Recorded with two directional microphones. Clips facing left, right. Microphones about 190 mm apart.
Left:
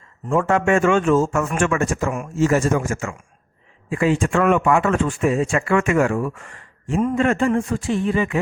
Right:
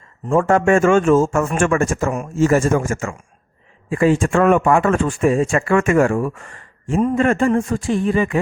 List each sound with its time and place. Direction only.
0.3 s speech: 45° right (ahead or behind)